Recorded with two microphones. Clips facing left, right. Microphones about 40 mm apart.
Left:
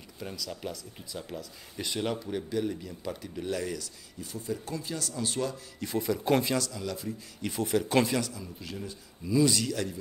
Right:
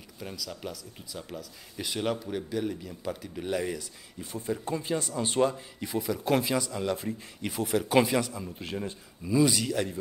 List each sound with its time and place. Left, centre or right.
0.2 s speech: centre
3.4 s speech: right
5.9 s speech: centre
6.6 s speech: right
7.4 s speech: centre
8.3 s speech: right
9.3 s speech: centre